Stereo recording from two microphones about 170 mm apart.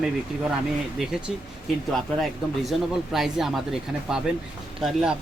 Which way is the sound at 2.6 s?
Centre (ahead or behind).